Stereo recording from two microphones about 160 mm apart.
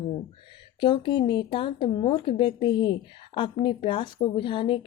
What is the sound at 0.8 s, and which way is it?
Speech, 30° left (ahead or behind).